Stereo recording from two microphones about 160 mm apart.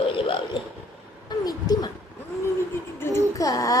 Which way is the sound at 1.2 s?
25° left (ahead or behind).